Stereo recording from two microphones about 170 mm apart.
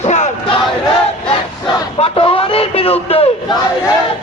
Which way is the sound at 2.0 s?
35° left (ahead or behind).